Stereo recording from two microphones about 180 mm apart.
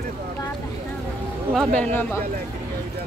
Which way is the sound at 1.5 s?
5° left (ahead or behind).